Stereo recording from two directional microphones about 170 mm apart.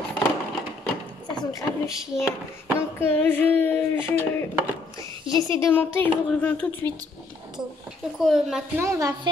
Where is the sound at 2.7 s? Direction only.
15° left (ahead or behind).